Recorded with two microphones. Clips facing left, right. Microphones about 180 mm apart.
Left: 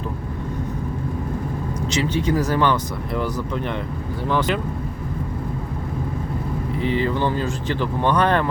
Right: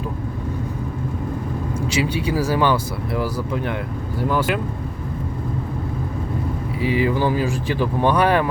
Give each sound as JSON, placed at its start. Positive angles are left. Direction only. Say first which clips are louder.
{"t": 1.9, "sound": "speech", "louder": "left 1 dB", "side_deg": -10}
{"t": 6.7, "sound": "speech", "louder": "right 2 dB", "side_deg": -10}